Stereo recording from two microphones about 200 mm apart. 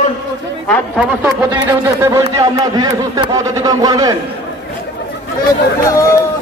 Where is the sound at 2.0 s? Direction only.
15° right (ahead or behind).